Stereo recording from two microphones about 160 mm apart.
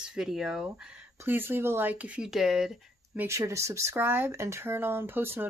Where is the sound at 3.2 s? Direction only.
20° right (ahead or behind).